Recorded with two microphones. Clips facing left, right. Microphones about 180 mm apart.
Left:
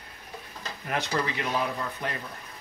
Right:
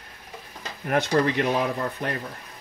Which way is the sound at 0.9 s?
55° right (ahead or behind).